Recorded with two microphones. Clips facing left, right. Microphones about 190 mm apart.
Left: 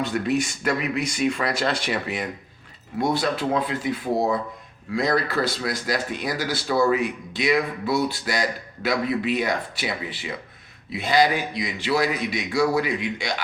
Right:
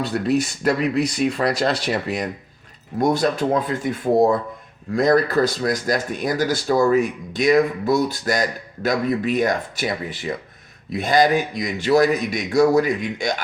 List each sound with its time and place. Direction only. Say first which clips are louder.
0.0 s speech: right 3 dB; 35° right (ahead or behind)
4.9 s speech: right 6 dB; 45° right (ahead or behind)